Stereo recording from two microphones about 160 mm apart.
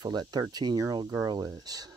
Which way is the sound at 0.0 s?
25° right (ahead or behind).